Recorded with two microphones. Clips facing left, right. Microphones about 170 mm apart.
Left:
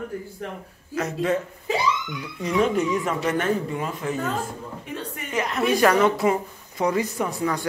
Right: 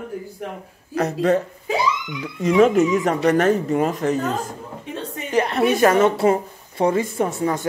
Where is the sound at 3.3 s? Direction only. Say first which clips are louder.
Right 7 dB; 40° right (ahead or behind).